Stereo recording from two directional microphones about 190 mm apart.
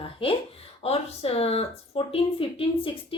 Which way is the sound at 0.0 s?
30° left (ahead or behind).